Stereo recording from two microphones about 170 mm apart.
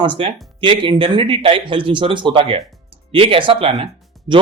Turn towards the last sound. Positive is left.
turn(degrees=-30)  # may be behind; listen again after turning